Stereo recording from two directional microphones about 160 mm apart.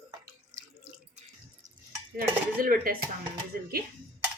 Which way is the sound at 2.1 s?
65° right (ahead or behind).